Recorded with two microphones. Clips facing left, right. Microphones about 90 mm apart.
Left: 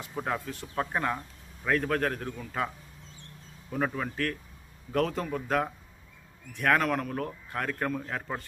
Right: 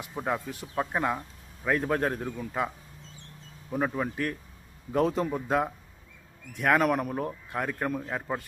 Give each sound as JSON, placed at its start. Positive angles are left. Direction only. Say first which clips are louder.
{"t": 0.0, "sound": "a man's voice", "louder": "right 1 dB", "side_deg": -10}
{"t": 3.9, "sound": "a man's voice", "louder": "right 2 dB", "side_deg": -15}